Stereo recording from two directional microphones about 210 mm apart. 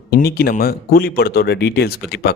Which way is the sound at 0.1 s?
45° left (ahead or behind).